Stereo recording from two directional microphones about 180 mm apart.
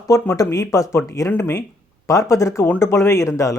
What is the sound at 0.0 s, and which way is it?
Speech, 20° left (ahead or behind).